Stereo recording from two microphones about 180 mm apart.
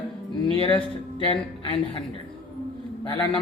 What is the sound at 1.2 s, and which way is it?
Speech, 30° left (ahead or behind).